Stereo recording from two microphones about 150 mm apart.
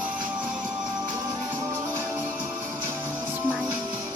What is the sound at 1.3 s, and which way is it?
Music, 20° right (ahead or behind).